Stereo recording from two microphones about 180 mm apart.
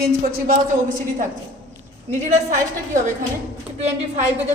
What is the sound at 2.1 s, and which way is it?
Speech, 40° right (ahead or behind).